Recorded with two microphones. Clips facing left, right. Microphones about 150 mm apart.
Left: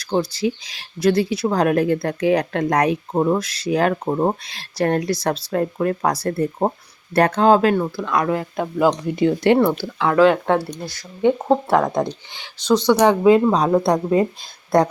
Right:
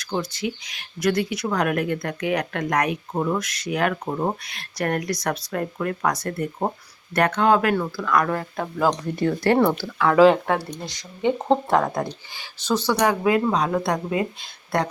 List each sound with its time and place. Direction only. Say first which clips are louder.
0.0 s speech: left 6 dB; 35° left (ahead or behind); by 10.1 s 15° left (ahead or behind)
10.1 s speech: left 1 dB; centre (ahead or behind)
11.3 s speech: left 3 dB; 10° left (ahead or behind); by 14.9 s 40° left (ahead or behind)